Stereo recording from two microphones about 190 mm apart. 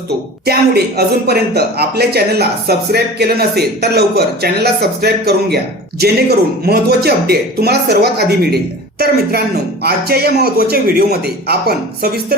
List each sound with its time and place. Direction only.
0.4 s speech: 55° right (ahead or behind)
6.7 s speech: 55° right (ahead or behind)